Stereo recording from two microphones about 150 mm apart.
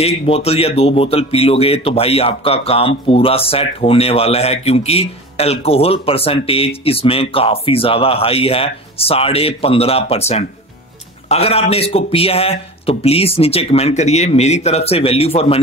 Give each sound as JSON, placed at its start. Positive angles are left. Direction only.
{"t": 0.0, "sound": "speech", "side_deg": 40}